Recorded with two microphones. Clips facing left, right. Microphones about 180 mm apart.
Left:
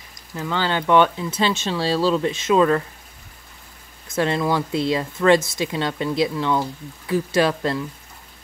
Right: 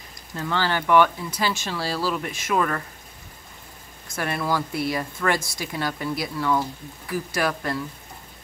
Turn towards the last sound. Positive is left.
turn(degrees=25)  # may be behind; listen again after turning